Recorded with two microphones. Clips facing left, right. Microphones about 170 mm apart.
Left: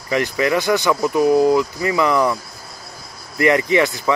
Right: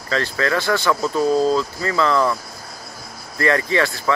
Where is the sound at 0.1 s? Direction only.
15° left (ahead or behind).